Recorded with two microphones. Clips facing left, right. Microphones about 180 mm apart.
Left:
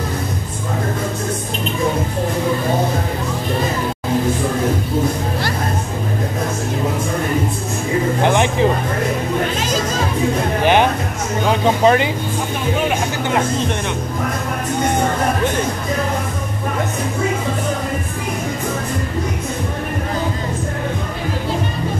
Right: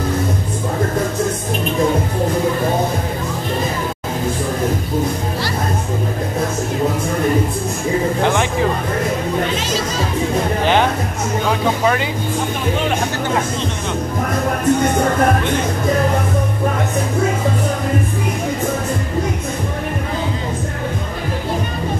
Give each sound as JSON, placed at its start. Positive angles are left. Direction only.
{"t": 8.2, "sound": "a sound", "side_deg": 20}
{"t": 10.6, "sound": "music", "side_deg": 15}
{"t": 11.8, "sound": "vehicle", "side_deg": 25}